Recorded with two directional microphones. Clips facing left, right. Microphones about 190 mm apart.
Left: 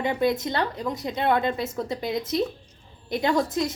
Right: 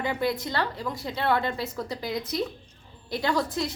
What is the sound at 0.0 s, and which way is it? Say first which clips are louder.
A woman's voice: left 4 dB; 20° left (ahead or behind).